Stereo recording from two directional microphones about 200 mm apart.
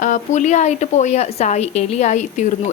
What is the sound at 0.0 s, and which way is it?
A woman's voice, 40° left (ahead or behind).